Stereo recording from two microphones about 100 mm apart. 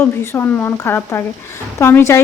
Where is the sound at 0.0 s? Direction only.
20° left (ahead or behind).